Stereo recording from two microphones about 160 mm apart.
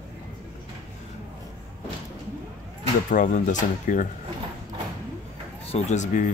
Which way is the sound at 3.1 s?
50° left (ahead or behind).